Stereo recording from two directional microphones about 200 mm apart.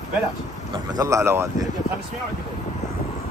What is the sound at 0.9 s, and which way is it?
Speech, 15° right (ahead or behind).